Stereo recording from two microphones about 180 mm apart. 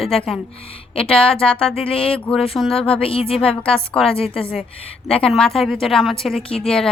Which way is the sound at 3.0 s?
30° left (ahead or behind).